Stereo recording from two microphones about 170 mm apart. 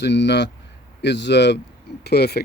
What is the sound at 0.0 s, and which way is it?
A man's voice, 90° left.